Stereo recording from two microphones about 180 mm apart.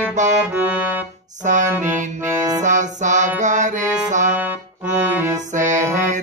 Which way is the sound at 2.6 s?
45° right (ahead or behind).